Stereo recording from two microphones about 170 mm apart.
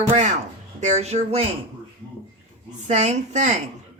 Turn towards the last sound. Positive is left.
turn(degrees=-45)  # may be behind; listen again after turning